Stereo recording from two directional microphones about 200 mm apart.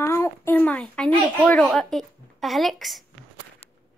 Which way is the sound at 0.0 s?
15° left (ahead or behind).